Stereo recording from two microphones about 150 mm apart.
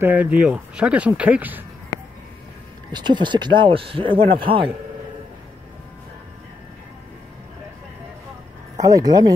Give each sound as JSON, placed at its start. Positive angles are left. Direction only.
{"t": 0.0, "sound": "speech", "side_deg": -10}
{"t": 2.9, "sound": "speech", "side_deg": -30}
{"t": 8.7, "sound": "speech", "side_deg": -25}